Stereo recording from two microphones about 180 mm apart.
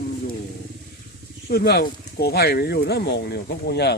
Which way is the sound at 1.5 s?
60° left (ahead or behind).